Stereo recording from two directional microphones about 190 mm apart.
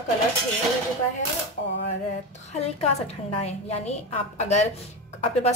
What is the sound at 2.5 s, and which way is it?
Speech, 35° left (ahead or behind).